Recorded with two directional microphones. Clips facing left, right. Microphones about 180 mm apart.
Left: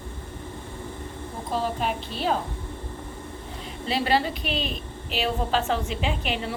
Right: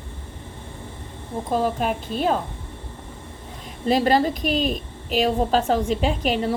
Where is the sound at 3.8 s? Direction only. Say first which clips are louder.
Right 6 dB; 45° right (ahead or behind).